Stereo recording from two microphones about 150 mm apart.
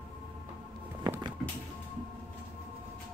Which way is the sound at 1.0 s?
25° right (ahead or behind).